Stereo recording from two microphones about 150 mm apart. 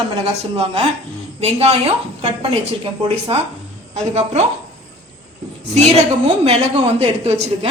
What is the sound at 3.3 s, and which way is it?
A woman's voice, 40° right (ahead or behind).